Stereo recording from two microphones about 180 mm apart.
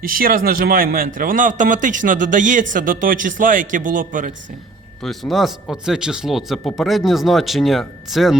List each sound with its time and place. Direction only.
0.0 s a man's voice: 55° right (ahead or behind)
5.0 s speech: centre (ahead or behind)